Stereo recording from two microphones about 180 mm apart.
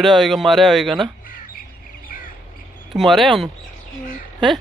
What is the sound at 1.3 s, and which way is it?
Bird, 50° left (ahead or behind).